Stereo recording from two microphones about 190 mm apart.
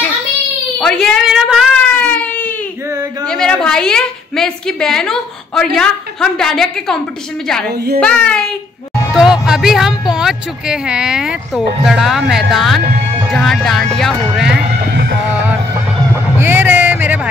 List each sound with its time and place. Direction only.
0.7 s a sound: 5° left (ahead or behind)
3.3 s a woman's voice: 5° left (ahead or behind)
7.7 s a child's voice: 55° right (ahead or behind)
8.0 s speech: 5° left (ahead or behind)
9.1 s music: 5° right (ahead or behind)
9.5 s speech: centre (ahead or behind)
14.9 s music: 55° right (ahead or behind)
16.3 s music: 10° right (ahead or behind)